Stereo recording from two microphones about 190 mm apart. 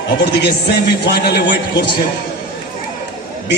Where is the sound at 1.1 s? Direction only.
60° left (ahead or behind).